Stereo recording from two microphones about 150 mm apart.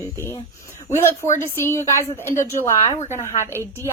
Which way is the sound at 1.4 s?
15° left (ahead or behind).